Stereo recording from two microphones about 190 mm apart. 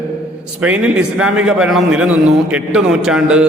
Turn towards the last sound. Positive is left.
turn(degrees=-5)  # may be behind; listen again after turning